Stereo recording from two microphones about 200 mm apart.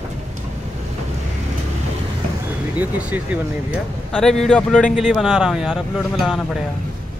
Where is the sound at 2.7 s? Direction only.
5° right (ahead or behind).